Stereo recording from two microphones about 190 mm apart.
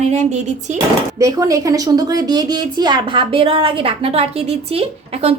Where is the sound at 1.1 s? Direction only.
15° right (ahead or behind).